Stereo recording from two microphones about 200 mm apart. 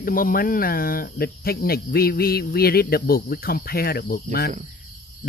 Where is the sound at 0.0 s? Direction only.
45° left (ahead or behind).